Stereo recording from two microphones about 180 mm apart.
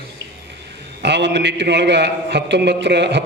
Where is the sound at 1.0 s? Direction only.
75° right (ahead or behind).